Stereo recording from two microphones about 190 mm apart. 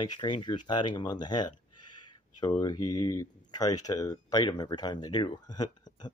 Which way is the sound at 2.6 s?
20° left (ahead or behind).